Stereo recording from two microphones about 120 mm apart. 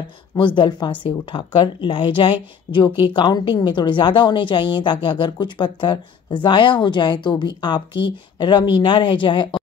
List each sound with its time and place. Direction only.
0.6 s a woman's voice: 40° left (ahead or behind)